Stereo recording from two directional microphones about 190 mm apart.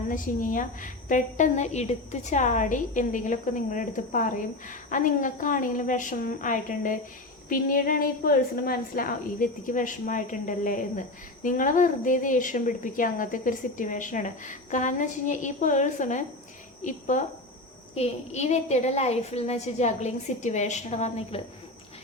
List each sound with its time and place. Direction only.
0.1 s a woman's voice: 45° left (ahead or behind)